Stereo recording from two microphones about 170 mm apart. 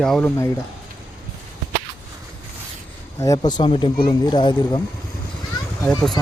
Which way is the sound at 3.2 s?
20° left (ahead or behind).